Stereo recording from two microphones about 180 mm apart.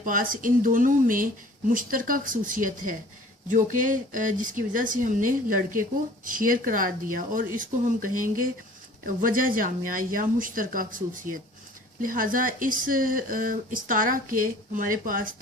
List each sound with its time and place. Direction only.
0.0 s speech: 50° right (ahead or behind)